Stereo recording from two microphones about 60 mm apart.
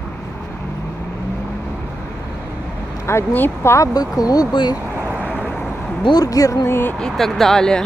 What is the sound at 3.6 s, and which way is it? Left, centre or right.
Speech, left.